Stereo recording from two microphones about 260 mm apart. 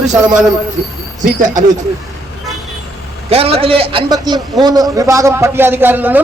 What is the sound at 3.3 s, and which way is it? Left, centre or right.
A man's voice, right.